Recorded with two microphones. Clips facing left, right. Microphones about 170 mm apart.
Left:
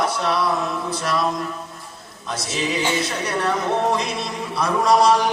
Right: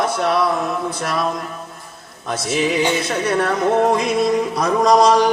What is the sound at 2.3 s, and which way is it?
Music, 50° right (ahead or behind).